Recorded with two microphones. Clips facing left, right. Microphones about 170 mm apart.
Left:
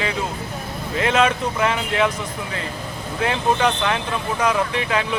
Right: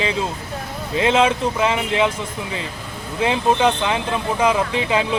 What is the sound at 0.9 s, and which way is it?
Speech, 25° right (ahead or behind).